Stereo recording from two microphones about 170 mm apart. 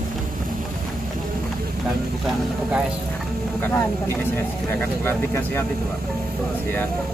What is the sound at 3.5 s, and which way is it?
Vehicle, 10° left (ahead or behind).